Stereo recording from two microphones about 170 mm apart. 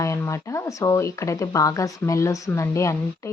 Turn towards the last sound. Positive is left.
turn(degrees=15)  # may be behind; listen again after turning